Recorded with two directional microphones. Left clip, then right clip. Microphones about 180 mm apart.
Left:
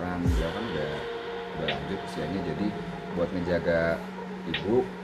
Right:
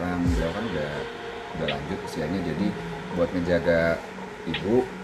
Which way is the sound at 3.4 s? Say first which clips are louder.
Right 3 dB; centre (ahead or behind).